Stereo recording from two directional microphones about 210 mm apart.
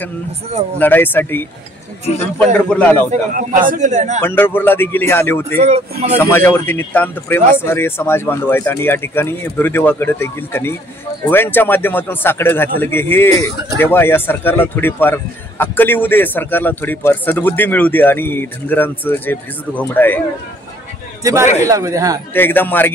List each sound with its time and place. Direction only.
0.7 s a man's voice: 10° left (ahead or behind)
3.1 s a man's voice: 40° right (ahead or behind)
4.2 s a man's voice: 10° left (ahead or behind)
5.6 s a man's voice: 30° right (ahead or behind)
6.1 s a man's voice: 10° left (ahead or behind)
21.2 s a man's voice: 15° right (ahead or behind)
22.3 s a man's voice: 10° left (ahead or behind)